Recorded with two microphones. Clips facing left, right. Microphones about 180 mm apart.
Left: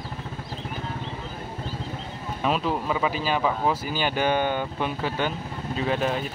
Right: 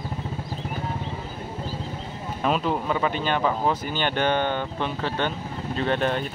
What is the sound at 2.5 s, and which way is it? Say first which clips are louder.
Speech: right 1 dB; centre (ahead or behind).